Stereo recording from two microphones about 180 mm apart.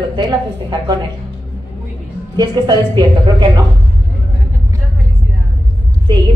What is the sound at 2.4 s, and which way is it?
A woman's voice, 25° right (ahead or behind).